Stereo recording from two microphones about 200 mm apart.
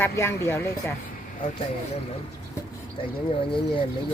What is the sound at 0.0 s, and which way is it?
Speech, 15° left (ahead or behind).